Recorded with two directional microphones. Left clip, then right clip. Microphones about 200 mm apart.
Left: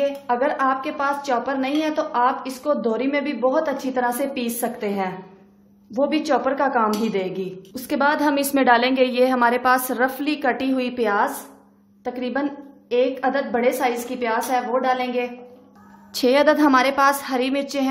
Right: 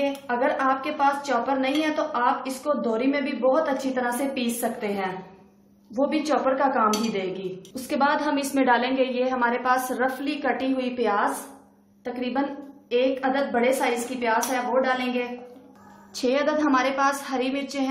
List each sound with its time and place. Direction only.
0.3 s a woman's voice: 40° left (ahead or behind)